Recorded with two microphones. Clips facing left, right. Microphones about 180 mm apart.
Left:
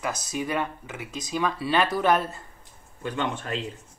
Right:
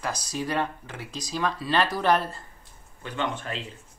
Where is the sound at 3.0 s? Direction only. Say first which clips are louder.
Left 1 dB; 45° left (ahead or behind).